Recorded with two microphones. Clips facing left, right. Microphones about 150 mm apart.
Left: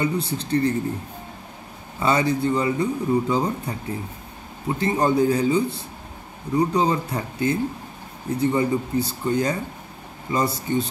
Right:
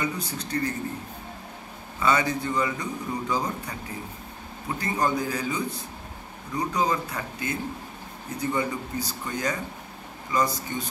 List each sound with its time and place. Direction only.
0.0 s speech: 30° left (ahead or behind)
2.0 s a man's voice: 30° left (ahead or behind)
4.7 s a man's voice: 30° left (ahead or behind)